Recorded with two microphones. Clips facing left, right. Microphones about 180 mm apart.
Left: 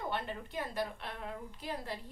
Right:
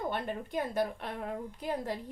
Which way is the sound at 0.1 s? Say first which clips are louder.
Right 4 dB; 45° right (ahead or behind).